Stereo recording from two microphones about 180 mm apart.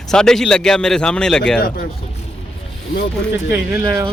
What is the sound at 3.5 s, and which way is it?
Speech, 10° right (ahead or behind).